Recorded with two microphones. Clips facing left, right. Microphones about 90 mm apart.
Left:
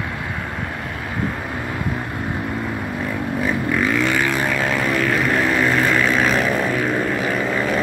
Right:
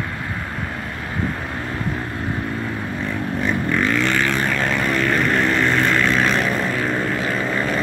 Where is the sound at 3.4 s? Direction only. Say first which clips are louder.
Even; 5° left (ahead or behind).